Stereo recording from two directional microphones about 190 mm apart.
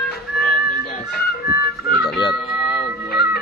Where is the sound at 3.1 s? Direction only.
55° left (ahead or behind).